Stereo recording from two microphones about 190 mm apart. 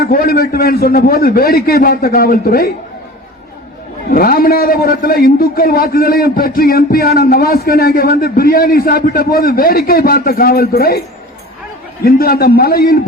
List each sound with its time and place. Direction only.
0.0 s a man's voice: 50° left (ahead or behind)
4.1 s a man's voice: 50° left (ahead or behind)
12.0 s a man's voice: 50° left (ahead or behind)